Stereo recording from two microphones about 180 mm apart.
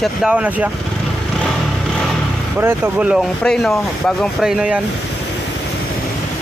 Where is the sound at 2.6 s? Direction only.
10° right (ahead or behind).